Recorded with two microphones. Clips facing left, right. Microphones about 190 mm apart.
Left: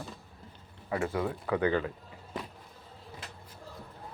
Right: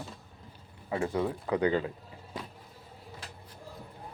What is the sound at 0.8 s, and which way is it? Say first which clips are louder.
Speech: right 1 dB; 25° right (ahead or behind).